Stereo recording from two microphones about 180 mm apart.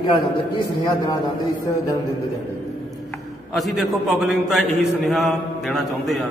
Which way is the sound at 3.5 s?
Centre (ahead or behind).